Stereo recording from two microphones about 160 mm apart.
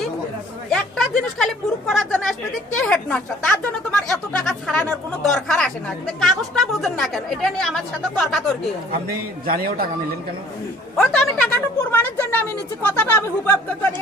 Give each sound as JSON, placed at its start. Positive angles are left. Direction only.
{"t": 0.7, "sound": "a sound", "side_deg": 5}
{"t": 1.9, "sound": "a woman's voice", "side_deg": 0}
{"t": 9.5, "sound": "a man's voice", "side_deg": -65}
{"t": 10.9, "sound": "a woman's voice", "side_deg": 5}